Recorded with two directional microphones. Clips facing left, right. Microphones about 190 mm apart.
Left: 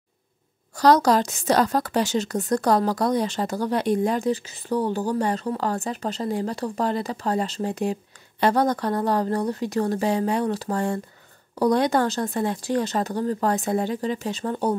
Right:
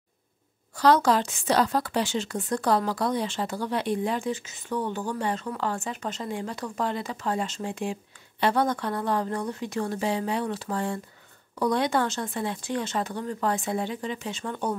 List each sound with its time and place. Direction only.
0.7 s a woman's voice: 40° left (ahead or behind)